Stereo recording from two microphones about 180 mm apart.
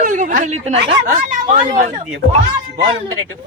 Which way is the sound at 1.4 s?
30° right (ahead or behind).